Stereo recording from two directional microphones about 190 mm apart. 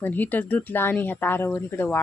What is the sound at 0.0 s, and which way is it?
Speech, 10° left (ahead or behind).